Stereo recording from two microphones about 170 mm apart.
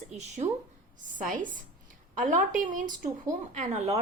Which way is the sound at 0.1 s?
40° right (ahead or behind).